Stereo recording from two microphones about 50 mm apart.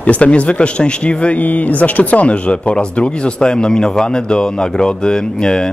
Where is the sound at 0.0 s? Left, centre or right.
Left.